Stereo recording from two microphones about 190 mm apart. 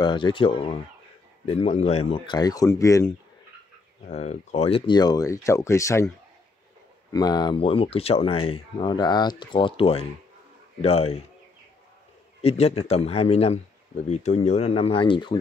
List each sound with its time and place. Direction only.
0.0 s speech: 25° left (ahead or behind)
4.1 s speech: 35° left (ahead or behind); by 6.0 s 15° left (ahead or behind)
7.1 s a man's voice: 20° left (ahead or behind)
12.4 s a man's voice: 35° left (ahead or behind)